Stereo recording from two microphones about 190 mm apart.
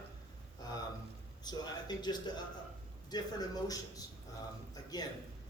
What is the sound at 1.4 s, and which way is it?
A man's voice, 20° left (ahead or behind).